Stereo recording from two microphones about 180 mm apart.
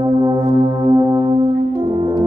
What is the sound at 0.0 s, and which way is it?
Gong, 20° right (ahead or behind).